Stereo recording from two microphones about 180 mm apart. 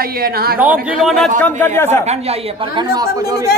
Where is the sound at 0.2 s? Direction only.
60° right (ahead or behind).